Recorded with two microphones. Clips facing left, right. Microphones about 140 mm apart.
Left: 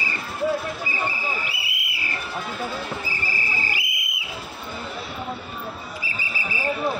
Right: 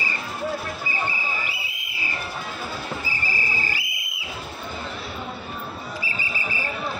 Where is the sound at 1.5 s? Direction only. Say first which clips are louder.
Left 1 dB; 75° left (ahead or behind).